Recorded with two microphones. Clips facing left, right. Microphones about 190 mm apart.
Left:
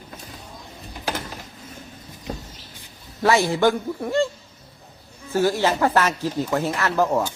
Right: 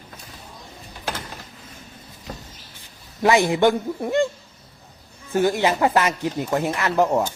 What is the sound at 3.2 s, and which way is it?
A man's voice, 15° right (ahead or behind).